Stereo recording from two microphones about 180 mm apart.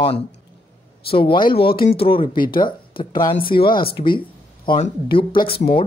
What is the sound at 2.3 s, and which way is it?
Speech, 55° left (ahead or behind).